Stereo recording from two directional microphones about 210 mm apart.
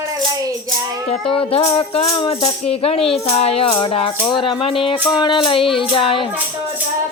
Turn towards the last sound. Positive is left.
turn(degrees=25)  # may be behind; listen again after turning